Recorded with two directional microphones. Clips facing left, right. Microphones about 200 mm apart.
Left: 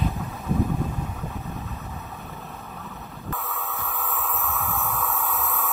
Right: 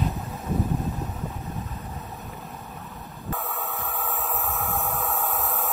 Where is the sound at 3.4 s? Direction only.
50° right (ahead or behind).